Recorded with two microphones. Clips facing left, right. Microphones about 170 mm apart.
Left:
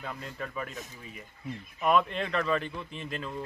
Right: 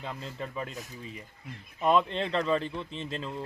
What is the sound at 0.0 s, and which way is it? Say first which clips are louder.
Speech: right 1 dB; 25° right (ahead or behind).